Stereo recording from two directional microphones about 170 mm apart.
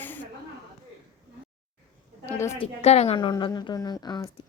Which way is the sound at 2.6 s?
40° left (ahead or behind).